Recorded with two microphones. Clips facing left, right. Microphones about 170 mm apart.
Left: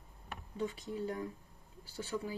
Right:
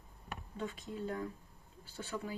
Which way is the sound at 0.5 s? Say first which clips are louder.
Left 4 dB; 15° left (ahead or behind).